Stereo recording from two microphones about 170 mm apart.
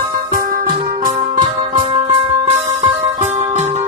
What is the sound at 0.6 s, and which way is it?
Music, 25° right (ahead or behind).